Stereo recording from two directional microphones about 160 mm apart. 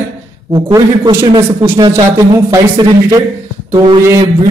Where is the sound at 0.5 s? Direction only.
25° right (ahead or behind).